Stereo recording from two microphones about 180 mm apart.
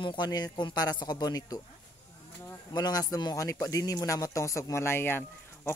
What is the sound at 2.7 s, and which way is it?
A man's voice, 20° left (ahead or behind).